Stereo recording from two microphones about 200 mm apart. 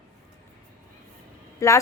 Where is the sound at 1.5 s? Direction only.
15° left (ahead or behind).